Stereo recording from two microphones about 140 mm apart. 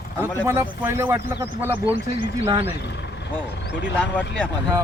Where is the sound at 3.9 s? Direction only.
10° left (ahead or behind).